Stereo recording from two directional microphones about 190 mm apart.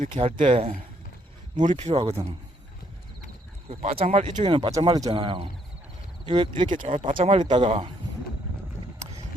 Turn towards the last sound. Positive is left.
turn(degrees=-30)  # may be behind; listen again after turning